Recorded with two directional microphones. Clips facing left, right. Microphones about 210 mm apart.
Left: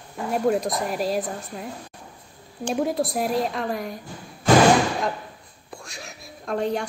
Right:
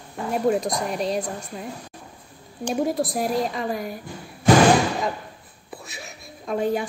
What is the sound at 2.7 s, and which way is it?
A woman's voice, centre (ahead or behind).